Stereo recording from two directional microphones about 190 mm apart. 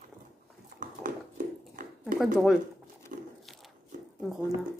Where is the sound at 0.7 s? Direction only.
50° right (ahead or behind).